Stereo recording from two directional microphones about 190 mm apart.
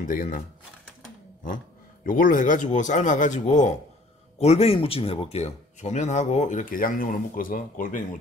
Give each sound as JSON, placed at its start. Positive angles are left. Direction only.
{"t": 0.0, "sound": "speech", "side_deg": 45}
{"t": 2.0, "sound": "speech", "side_deg": 45}